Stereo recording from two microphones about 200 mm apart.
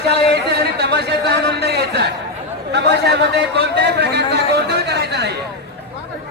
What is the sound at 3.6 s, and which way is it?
A man's voice, 55° right (ahead or behind).